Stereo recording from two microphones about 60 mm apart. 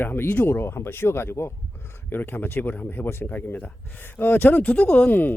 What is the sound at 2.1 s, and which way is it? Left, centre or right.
Speech, left.